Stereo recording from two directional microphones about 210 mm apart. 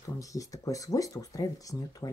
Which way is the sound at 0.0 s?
15° left (ahead or behind).